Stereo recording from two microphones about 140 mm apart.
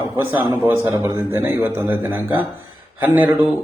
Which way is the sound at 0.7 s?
15° right (ahead or behind).